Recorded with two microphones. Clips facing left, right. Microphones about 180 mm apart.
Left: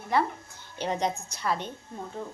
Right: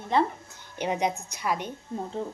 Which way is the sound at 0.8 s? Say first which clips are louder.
Right 2 dB; 10° right (ahead or behind).